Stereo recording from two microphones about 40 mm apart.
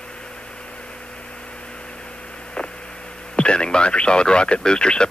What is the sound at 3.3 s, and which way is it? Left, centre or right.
Radio, left.